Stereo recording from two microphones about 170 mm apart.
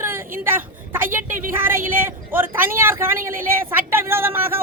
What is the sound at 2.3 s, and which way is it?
A woman's voice, 10° right (ahead or behind).